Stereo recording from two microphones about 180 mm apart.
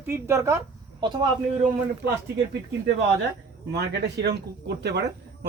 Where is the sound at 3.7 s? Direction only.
70° right (ahead or behind).